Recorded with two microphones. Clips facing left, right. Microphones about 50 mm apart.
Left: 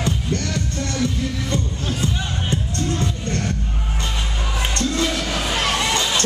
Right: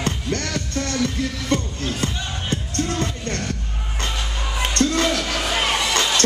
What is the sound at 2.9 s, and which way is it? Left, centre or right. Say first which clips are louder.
Music: left 1 dB; right.